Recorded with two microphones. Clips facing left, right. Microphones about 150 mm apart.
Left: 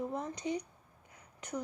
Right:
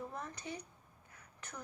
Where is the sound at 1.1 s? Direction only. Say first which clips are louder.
Left 11 dB; 15° left (ahead or behind).